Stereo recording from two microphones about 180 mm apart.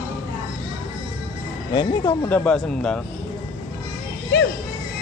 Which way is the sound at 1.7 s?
25° left (ahead or behind).